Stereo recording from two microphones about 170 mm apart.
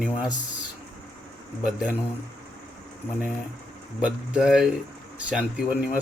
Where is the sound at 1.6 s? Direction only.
5° right (ahead or behind).